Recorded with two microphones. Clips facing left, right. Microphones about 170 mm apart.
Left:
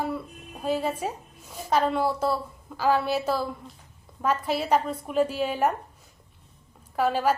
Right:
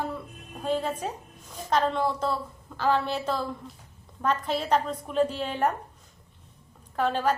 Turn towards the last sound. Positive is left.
turn(degrees=5)  # may be behind; listen again after turning